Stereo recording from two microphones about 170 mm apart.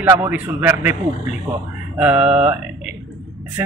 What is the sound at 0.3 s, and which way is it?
Speech, 10° right (ahead or behind).